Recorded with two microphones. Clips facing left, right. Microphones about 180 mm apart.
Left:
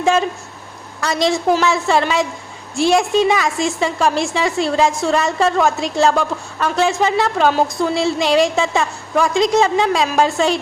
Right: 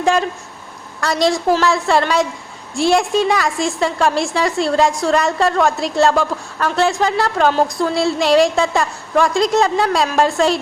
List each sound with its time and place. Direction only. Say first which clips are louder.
0.0 s a woman's voice: even; centre (ahead or behind)